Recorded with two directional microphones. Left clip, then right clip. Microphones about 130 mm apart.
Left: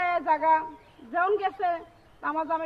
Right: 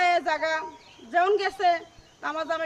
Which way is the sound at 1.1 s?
40° right (ahead or behind).